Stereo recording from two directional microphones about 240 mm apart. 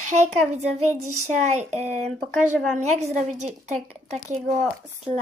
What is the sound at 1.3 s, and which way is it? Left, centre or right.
Speech, right.